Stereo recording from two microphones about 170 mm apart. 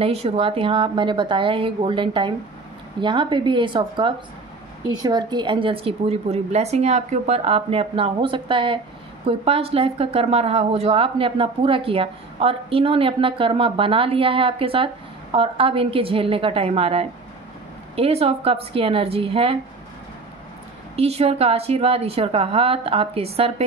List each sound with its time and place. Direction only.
0.0 s speech: 35° right (ahead or behind)
20.9 s speech: 35° right (ahead or behind)